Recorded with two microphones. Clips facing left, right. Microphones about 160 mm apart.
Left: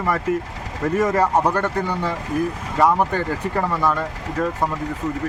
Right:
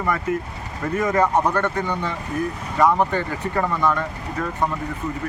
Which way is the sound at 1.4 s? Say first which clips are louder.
Left 1 dB; 10° left (ahead or behind).